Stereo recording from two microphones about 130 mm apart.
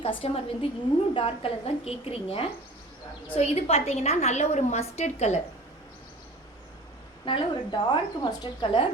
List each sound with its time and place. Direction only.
0.0 s a woman's voice: 50° left (ahead or behind)
7.3 s speech: 35° left (ahead or behind)